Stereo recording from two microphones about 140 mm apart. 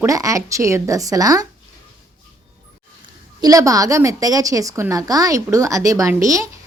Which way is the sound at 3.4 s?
25° right (ahead or behind).